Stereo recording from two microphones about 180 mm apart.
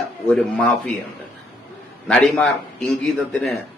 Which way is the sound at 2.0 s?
5° left (ahead or behind).